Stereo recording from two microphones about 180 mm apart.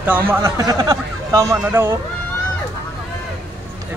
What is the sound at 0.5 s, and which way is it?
Speech, 20° right (ahead or behind).